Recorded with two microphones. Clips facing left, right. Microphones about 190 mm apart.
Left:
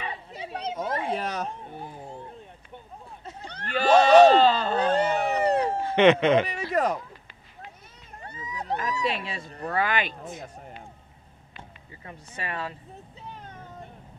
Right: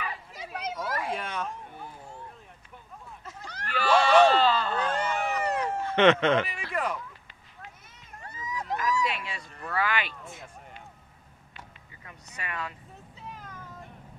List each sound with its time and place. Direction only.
0.0 s children playing: 30° left (ahead or behind)
3.8 s a sound: 40° left (ahead or behind)
5.9 s speech: 15° left (ahead or behind)
6.4 s chop: 40° left (ahead or behind)
8.2 s a sound: 35° left (ahead or behind)
9.8 s speech: 20° left (ahead or behind)
12.0 s speech: 30° left (ahead or behind)
13.3 s vehicle: 30° left (ahead or behind)